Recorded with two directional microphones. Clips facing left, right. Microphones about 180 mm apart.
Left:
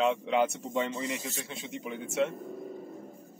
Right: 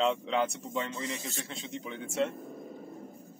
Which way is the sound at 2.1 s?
Centre (ahead or behind).